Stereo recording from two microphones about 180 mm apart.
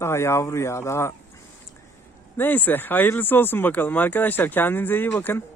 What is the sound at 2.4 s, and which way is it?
Speech, 10° left (ahead or behind).